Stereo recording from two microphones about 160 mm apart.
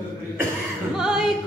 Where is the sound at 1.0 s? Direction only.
5° right (ahead or behind).